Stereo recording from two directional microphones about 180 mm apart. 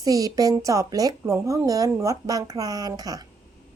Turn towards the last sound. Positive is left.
turn(degrees=-20)  # may be behind; listen again after turning